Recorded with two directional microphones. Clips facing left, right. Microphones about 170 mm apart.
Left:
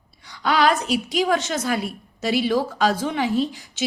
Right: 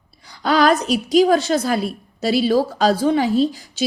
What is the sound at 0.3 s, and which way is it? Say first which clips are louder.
A woman's voice: right 4 dB; 35° right (ahead or behind).